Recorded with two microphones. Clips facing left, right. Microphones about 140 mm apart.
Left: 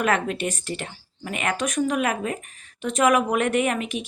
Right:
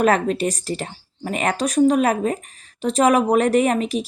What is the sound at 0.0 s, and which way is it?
Speech, 35° right (ahead or behind).